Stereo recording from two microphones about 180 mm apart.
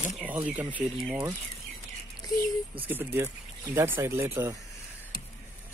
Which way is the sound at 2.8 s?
10° right (ahead or behind).